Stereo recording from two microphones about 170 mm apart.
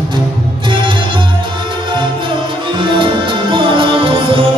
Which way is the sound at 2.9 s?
30° right (ahead or behind).